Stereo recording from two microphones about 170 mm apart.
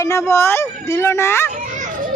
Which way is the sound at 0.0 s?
15° left (ahead or behind).